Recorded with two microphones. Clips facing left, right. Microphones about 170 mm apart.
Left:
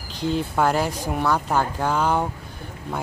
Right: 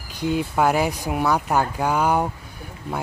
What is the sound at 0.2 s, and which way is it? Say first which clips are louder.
Speech: right 1 dB; 10° right (ahead or behind).